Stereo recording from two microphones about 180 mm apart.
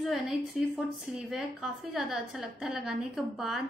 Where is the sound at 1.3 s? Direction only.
Centre (ahead or behind).